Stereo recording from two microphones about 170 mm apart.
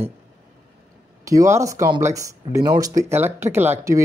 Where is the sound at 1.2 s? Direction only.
20° right (ahead or behind).